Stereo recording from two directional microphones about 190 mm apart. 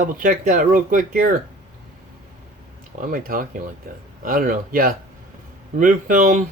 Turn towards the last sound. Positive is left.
turn(degrees=-45)  # may be behind; listen again after turning